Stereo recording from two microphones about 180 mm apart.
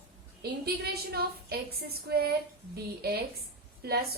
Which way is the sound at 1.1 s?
60° right (ahead or behind).